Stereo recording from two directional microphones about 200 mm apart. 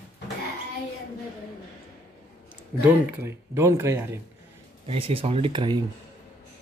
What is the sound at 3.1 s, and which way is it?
Speech, 10° right (ahead or behind).